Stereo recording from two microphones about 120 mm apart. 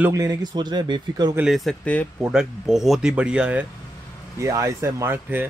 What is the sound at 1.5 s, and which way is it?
Speech, 5° left (ahead or behind).